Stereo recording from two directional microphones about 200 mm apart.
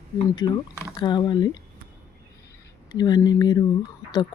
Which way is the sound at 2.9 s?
20° left (ahead or behind).